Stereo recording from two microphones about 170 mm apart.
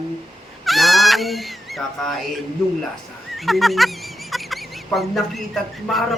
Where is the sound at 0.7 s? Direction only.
Centre (ahead or behind).